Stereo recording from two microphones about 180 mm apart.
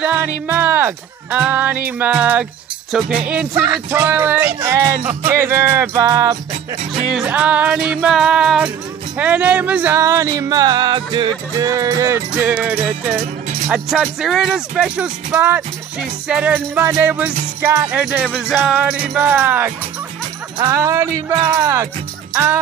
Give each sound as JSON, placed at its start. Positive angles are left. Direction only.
{"t": 0.0, "sound": "music", "side_deg": -10}
{"t": 2.9, "sound": "speech", "side_deg": -5}
{"t": 3.6, "sound": "music", "side_deg": -15}
{"t": 7.1, "sound": "speech", "side_deg": -5}
{"t": 9.2, "sound": "music", "side_deg": -10}
{"t": 13.2, "sound": "music", "side_deg": -40}
{"t": 13.7, "sound": "speech", "side_deg": 0}
{"t": 17.6, "sound": "music", "side_deg": -15}
{"t": 21.3, "sound": "speech", "side_deg": -25}
{"t": 22.3, "sound": "music", "side_deg": -15}